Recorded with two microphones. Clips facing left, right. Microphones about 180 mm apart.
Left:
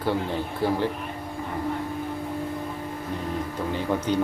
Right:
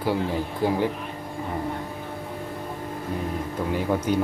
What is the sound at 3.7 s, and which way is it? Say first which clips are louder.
Speech: right 2 dB; 10° right (ahead or behind).